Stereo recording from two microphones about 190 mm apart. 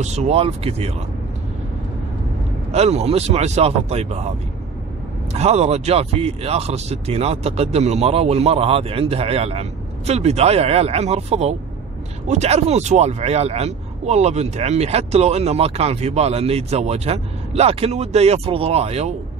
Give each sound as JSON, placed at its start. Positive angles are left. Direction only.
{"t": 0.0, "sound": "speech", "side_deg": -35}
{"t": 2.7, "sound": "speech", "side_deg": -35}
{"t": 5.3, "sound": "speech", "side_deg": -35}